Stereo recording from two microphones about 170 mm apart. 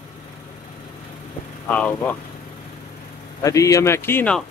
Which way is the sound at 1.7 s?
10° left (ahead or behind).